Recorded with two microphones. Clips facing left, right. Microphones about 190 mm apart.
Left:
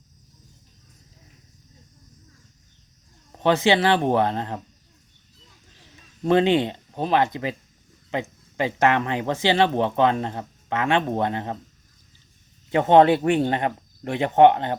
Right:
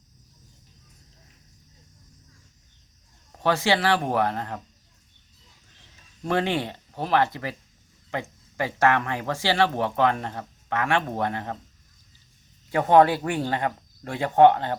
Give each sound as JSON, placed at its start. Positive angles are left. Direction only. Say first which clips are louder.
{"t": 3.3, "sound": "speech", "louder": "left 4 dB", "side_deg": 20}
{"t": 6.2, "sound": "speech", "louder": "left 7 dB", "side_deg": 20}
{"t": 12.7, "sound": "speech", "louder": "left 2 dB", "side_deg": 25}